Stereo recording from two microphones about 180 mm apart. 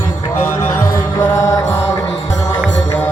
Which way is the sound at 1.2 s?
15° left (ahead or behind).